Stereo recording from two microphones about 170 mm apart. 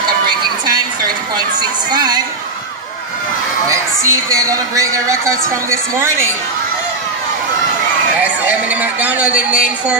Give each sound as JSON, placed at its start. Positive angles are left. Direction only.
{"t": 1.3, "sound": "a woman's voice", "side_deg": -25}
{"t": 3.7, "sound": "a woman's voice", "side_deg": -20}
{"t": 8.5, "sound": "a woman's voice", "side_deg": -10}